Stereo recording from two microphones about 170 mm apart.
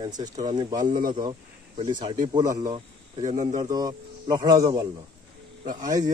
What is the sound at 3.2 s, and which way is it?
Speech, 45° right (ahead or behind).